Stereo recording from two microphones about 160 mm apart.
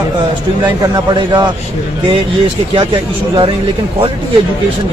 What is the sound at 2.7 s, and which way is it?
Speech, 30° right (ahead or behind).